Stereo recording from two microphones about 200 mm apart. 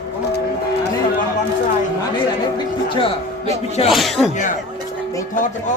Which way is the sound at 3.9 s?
Centre (ahead or behind).